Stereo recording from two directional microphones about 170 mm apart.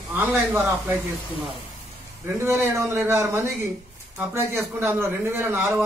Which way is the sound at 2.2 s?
15° right (ahead or behind).